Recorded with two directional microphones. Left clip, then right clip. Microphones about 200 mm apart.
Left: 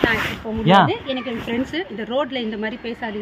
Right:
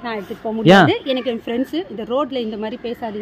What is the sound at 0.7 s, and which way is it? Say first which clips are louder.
Speech: right 3 dB; 50° right (ahead or behind).